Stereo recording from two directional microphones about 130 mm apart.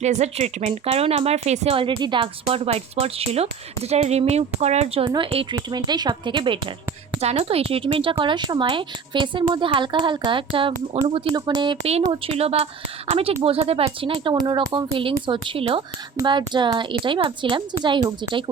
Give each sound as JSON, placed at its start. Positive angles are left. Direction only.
{"t": 0.0, "sound": "speech", "side_deg": -60}
{"t": 7.2, "sound": "a woman's voice", "side_deg": -55}
{"t": 11.9, "sound": "a woman's voice", "side_deg": -50}